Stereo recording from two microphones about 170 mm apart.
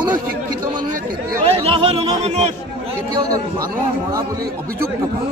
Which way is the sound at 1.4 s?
35° right (ahead or behind).